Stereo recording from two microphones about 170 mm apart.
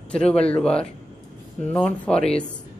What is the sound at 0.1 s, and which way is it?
Speech, 5° left (ahead or behind).